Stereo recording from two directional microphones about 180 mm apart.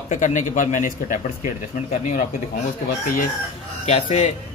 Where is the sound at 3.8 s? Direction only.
40° left (ahead or behind).